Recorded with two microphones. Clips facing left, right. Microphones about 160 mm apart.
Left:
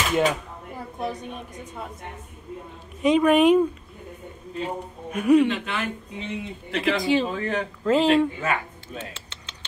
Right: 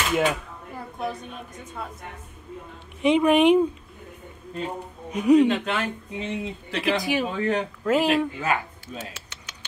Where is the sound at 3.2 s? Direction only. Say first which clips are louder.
Left 1 dB; 15° right (ahead or behind).